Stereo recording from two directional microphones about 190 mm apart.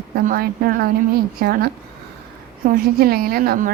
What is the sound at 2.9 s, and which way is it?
Speech, 50° right (ahead or behind).